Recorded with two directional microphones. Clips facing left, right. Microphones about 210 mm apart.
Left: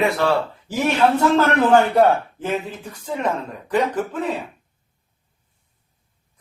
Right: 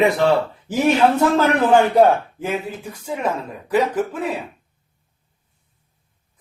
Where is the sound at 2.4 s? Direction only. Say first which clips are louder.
Even; 10° right (ahead or behind).